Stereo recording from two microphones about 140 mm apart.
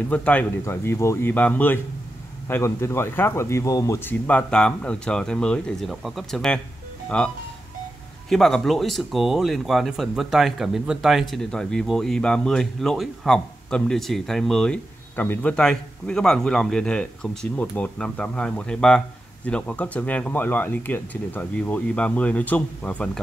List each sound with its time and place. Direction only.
0.1 s speech: 10° left (ahead or behind)